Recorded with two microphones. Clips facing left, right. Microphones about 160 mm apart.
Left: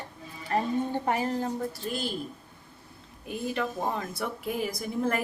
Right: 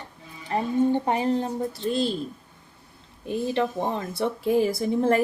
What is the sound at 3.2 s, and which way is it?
A woman's voice, 30° right (ahead or behind).